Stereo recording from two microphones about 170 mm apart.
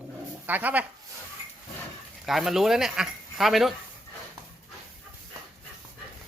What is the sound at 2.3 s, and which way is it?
Speech, centre (ahead or behind).